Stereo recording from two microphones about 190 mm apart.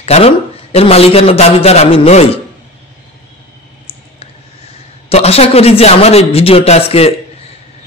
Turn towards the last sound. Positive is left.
turn(degrees=35)  # may be behind; listen again after turning